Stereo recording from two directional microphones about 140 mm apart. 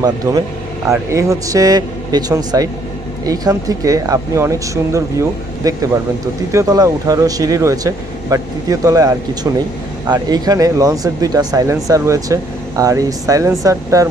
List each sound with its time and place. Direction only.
0.0 s speech: 25° right (ahead or behind)